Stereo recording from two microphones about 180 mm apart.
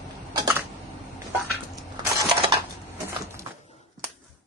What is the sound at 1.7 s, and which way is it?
Coin, 25° right (ahead or behind).